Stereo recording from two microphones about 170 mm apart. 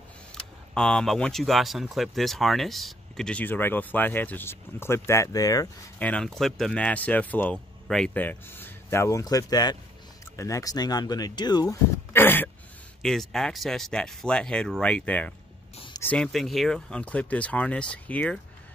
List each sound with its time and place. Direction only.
0.3 s speech: 5° left (ahead or behind); by 5.7 s 20° left (ahead or behind)
5.9 s a man's voice: 5° left (ahead or behind)